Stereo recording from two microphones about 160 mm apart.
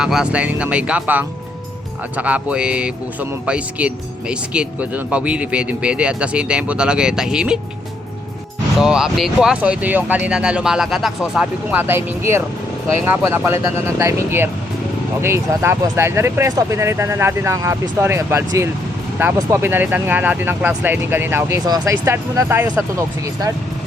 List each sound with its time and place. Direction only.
0.0 s speech: 5° right (ahead or behind)
8.8 s speech: 5° right (ahead or behind); by 23.5 s 20° right (ahead or behind)